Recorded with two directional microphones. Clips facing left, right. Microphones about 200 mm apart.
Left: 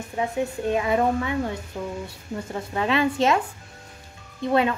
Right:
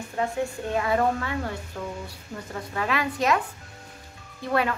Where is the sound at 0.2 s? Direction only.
15° left (ahead or behind).